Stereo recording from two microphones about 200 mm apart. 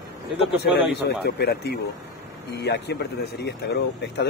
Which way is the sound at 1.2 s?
55° left (ahead or behind).